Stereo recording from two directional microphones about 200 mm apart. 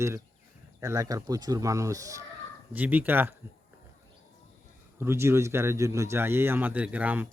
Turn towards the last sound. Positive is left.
turn(degrees=-10)  # may be behind; listen again after turning